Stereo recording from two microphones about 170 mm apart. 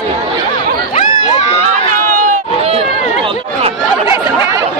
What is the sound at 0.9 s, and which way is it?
Crowd, 40° left (ahead or behind).